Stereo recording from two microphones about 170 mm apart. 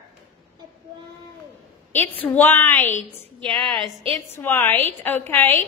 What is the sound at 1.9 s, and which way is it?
A woman's voice, 10° left (ahead or behind).